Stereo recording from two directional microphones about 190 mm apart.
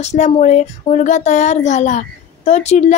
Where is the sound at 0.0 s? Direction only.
35° left (ahead or behind).